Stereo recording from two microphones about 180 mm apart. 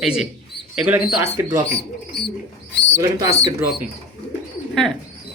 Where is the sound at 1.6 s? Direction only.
65° left (ahead or behind).